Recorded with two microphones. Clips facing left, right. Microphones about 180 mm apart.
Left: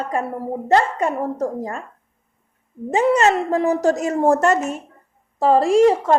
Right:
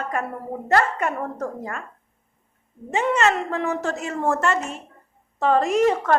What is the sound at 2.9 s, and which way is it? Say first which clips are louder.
A woman's voice: left 5 dB; 35° left (ahead or behind).